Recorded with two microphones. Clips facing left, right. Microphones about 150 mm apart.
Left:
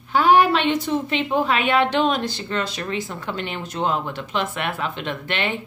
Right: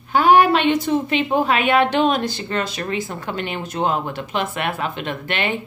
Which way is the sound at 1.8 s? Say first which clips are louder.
Right 1 dB; 10° right (ahead or behind).